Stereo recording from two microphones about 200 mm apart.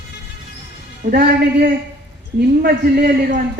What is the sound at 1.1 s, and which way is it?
A man's voice, 45° right (ahead or behind).